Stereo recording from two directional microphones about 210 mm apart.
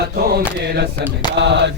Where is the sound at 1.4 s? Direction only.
55° right (ahead or behind).